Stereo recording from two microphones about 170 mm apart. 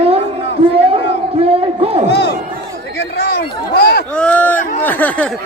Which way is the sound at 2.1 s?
80° left.